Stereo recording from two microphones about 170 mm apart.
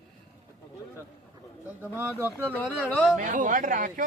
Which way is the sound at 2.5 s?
10° left (ahead or behind).